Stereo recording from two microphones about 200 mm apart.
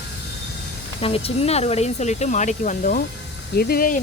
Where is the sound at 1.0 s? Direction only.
30° left (ahead or behind); by 4.0 s 45° left (ahead or behind).